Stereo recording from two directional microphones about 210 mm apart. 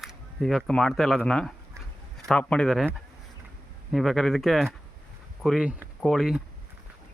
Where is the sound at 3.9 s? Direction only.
Centre (ahead or behind).